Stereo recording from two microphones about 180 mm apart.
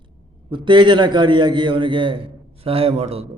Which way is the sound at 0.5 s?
25° right (ahead or behind).